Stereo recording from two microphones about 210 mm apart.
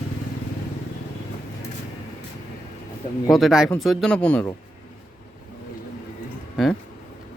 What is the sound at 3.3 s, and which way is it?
Speech, centre (ahead or behind).